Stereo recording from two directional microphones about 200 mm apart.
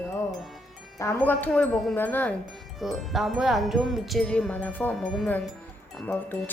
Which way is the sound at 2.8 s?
Centre (ahead or behind).